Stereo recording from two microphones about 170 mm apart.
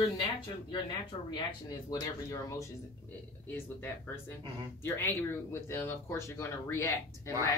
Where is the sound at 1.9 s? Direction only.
20° left (ahead or behind).